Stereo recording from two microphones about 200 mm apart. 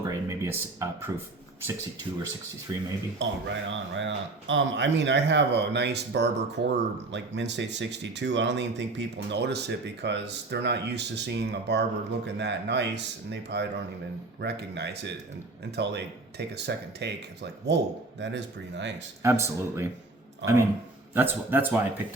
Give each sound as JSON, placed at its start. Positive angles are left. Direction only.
{"t": 0.1, "sound": "speech", "side_deg": -15}
{"t": 2.7, "sound": "speech", "side_deg": -15}
{"t": 3.2, "sound": "speech", "side_deg": -65}
{"t": 19.2, "sound": "speech", "side_deg": -15}
{"t": 21.2, "sound": "speech", "side_deg": -10}